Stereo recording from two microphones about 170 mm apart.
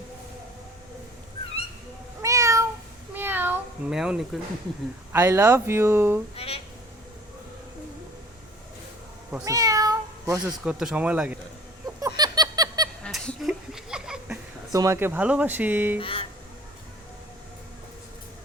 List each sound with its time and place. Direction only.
2.2 s cat: 20° right (ahead or behind)
5.1 s speech: 15° right (ahead or behind)
6.3 s speech: 35° left (ahead or behind)
9.4 s meow: 20° right (ahead or behind)
10.3 s speech: 5° right (ahead or behind)
11.9 s a sound: 20° right (ahead or behind)
13.0 s a sound: 5° left (ahead or behind)
14.7 s speech: 20° right (ahead or behind)
16.0 s speech: 30° left (ahead or behind)